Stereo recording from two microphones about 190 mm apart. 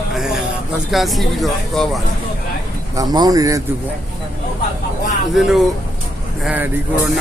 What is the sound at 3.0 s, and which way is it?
Speech, 20° right (ahead or behind).